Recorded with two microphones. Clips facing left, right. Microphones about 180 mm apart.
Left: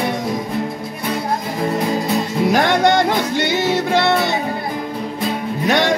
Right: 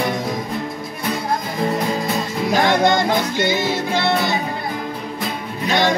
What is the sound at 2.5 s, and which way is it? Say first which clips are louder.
Music: even; 70° left (ahead or behind).